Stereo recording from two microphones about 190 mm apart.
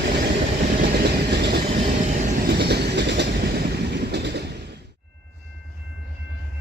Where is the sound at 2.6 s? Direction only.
60° right (ahead or behind).